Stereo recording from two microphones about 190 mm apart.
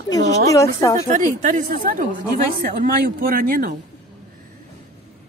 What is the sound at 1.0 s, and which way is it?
A woman's voice, 40° right (ahead or behind).